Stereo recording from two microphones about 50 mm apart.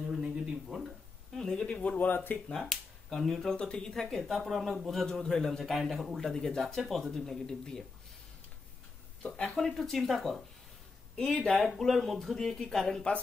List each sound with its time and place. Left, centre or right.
0.2 s a sound: centre
1.3 s speech: centre
1.8 s speech: left
2.0 s speech: left
2.7 s speech: centre
3.5 s speech: centre
9.6 s speech: centre
11.1 s speech: centre
11.4 s speech: centre